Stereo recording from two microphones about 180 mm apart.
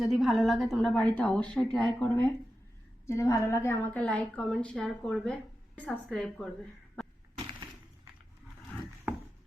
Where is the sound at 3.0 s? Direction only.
15° left (ahead or behind).